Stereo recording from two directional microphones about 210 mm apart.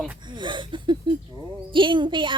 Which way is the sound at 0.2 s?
20° right (ahead or behind).